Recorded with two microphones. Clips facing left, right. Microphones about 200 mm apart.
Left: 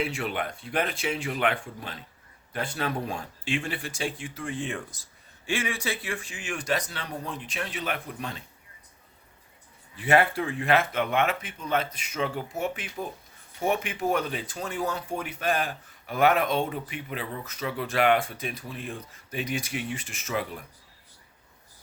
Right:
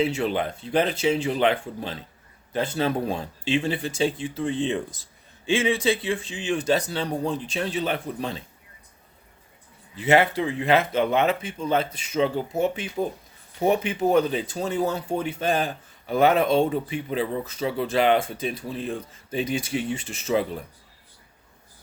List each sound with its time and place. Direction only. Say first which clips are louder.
0.1 s speech: right 6 dB; 25° right (ahead or behind)
10.0 s speech: right 3 dB; 20° right (ahead or behind)